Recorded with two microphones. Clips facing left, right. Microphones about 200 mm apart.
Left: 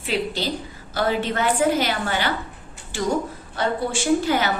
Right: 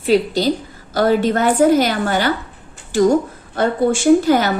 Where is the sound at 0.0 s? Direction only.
40° right (ahead or behind).